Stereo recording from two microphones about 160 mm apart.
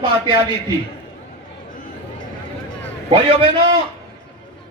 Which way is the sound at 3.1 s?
30° right (ahead or behind).